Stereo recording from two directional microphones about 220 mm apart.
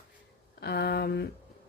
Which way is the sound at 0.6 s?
45° left (ahead or behind).